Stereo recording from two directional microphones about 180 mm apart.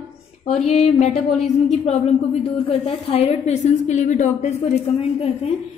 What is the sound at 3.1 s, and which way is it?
A woman's voice, 35° left (ahead or behind).